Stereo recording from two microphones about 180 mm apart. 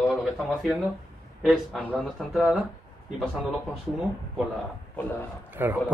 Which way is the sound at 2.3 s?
Centre (ahead or behind).